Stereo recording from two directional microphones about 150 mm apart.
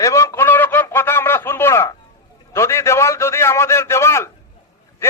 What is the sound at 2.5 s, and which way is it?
A man's voice, 20° left (ahead or behind).